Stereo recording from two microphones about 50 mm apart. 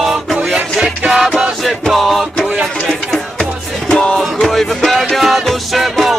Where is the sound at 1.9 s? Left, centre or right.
Centre.